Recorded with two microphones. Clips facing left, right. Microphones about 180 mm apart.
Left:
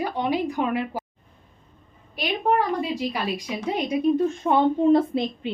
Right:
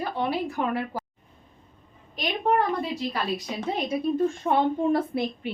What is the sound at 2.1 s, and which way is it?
A woman's voice, 10° left (ahead or behind).